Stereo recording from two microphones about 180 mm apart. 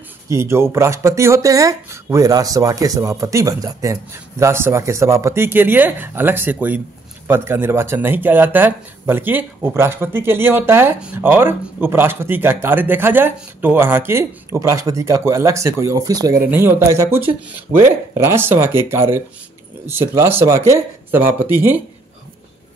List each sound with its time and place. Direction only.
0.3 s speech: 15° right (ahead or behind)